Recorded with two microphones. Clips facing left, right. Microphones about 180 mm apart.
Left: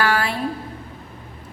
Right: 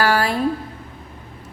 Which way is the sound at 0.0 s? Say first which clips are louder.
Right 3 dB; 40° right (ahead or behind).